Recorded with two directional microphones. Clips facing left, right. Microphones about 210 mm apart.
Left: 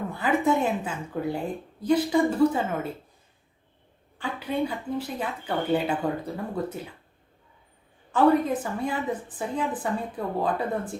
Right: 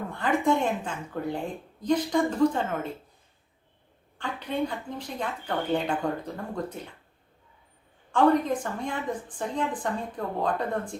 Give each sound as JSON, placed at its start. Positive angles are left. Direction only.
{"t": 0.1, "sound": "a woman's voice", "side_deg": 5}
{"t": 4.2, "sound": "a woman's voice", "side_deg": 10}
{"t": 8.1, "sound": "a woman's voice", "side_deg": 5}